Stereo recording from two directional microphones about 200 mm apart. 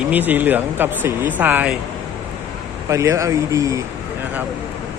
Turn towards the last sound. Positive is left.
turn(degrees=-15)  # may be behind; listen again after turning